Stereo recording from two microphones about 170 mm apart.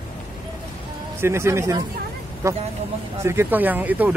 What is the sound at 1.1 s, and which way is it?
Speech, 15° right (ahead or behind).